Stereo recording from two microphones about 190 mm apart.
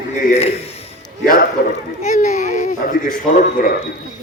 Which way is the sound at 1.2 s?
45° left (ahead or behind).